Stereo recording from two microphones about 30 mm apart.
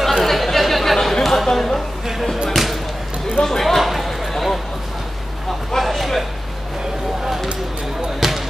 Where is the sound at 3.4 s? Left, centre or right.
Left.